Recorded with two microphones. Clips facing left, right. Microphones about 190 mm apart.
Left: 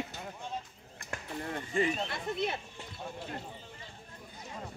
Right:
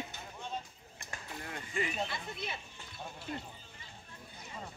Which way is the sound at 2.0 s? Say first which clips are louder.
Left 8 dB; 55° left (ahead or behind).